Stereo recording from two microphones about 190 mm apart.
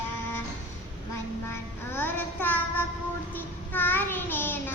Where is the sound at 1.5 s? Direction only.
10° left (ahead or behind).